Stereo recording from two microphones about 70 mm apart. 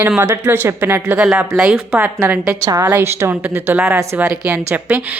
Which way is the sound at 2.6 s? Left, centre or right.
Right.